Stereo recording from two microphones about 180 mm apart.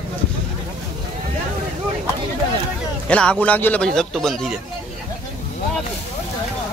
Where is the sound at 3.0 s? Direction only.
5° left (ahead or behind).